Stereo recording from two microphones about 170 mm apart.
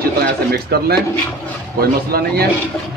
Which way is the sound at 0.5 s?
65° right (ahead or behind).